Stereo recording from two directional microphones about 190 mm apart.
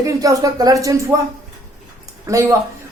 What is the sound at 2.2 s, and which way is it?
Speech, 15° right (ahead or behind).